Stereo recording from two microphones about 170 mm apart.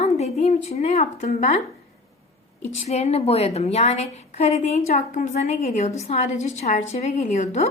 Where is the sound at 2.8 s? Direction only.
40° left (ahead or behind).